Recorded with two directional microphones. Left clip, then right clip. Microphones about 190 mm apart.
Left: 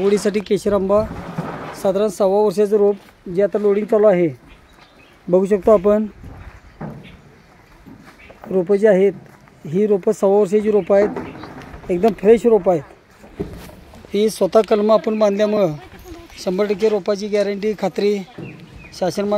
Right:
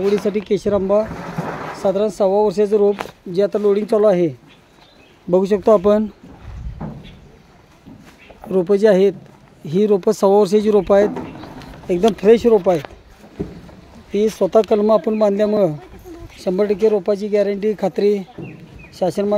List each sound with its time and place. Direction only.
0.0 s speech: 5° left (ahead or behind)
8.5 s speech: 10° right (ahead or behind)
11.1 s a sound: 50° right (ahead or behind)
12.2 s speech: 5° right (ahead or behind)
14.1 s speech: 5° right (ahead or behind)